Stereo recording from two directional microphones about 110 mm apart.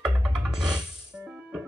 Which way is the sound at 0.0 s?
5° right (ahead or behind).